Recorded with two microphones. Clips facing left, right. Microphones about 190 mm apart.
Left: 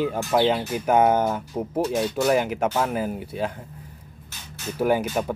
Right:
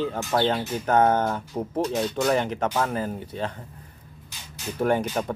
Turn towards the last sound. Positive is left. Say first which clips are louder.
# left 1 dB
turn(degrees=5)  # may be behind; listen again after turning